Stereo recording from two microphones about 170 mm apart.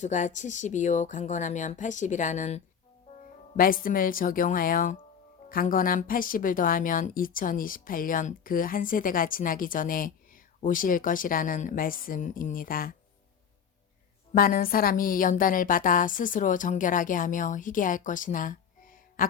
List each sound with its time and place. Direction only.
0.0 s speech: 45° left (ahead or behind)
3.5 s a woman's voice: 55° left (ahead or behind)
14.3 s speech: 60° left (ahead or behind)